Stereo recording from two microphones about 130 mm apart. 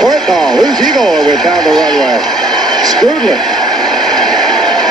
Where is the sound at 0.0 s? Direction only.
Centre (ahead or behind).